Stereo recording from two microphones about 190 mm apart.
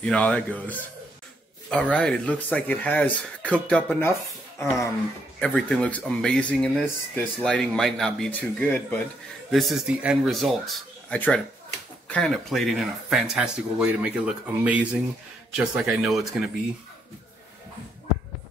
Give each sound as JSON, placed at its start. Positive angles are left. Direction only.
{"t": 0.0, "sound": "speech", "side_deg": 5}